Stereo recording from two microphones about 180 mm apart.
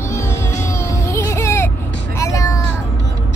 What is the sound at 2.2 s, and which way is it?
Vehicle, 15° left (ahead or behind).